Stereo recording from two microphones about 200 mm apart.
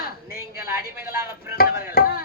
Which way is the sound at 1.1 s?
10° right (ahead or behind).